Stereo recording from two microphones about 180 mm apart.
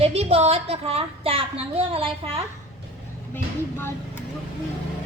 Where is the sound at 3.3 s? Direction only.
15° left (ahead or behind).